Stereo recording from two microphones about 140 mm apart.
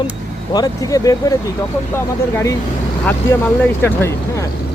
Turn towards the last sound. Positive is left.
turn(degrees=15)  # may be behind; listen again after turning